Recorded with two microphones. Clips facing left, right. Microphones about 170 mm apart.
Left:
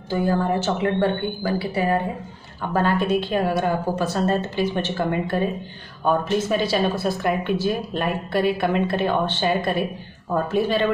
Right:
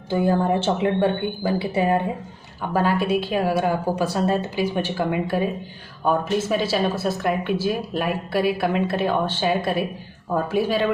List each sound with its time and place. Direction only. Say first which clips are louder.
0.1 s speech: right 1 dB; 20° right (ahead or behind)
2.7 s a woman's voice: even; 5° right (ahead or behind)